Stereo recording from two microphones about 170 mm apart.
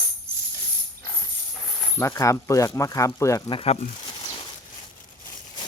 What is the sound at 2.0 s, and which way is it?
Speech, 15° left (ahead or behind).